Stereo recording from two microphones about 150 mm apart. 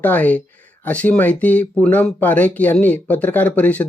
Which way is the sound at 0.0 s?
10° left (ahead or behind).